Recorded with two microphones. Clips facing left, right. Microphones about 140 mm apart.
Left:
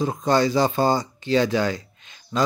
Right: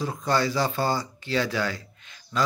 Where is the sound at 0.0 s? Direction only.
20° left (ahead or behind).